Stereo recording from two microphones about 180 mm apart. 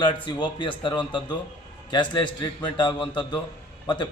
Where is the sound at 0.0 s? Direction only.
25° left (ahead or behind).